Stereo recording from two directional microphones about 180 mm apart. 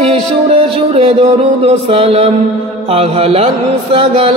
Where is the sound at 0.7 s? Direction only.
35° right (ahead or behind).